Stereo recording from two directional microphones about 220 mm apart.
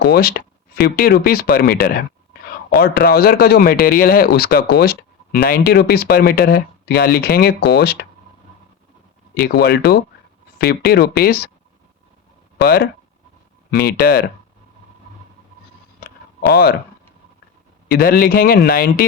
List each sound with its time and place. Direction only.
0.0 s speech: 45° left (ahead or behind)
9.3 s speech: 45° left (ahead or behind)
12.6 s speech: 45° left (ahead or behind)
16.0 s a sound: 45° left (ahead or behind)
17.8 s speech: 45° left (ahead or behind)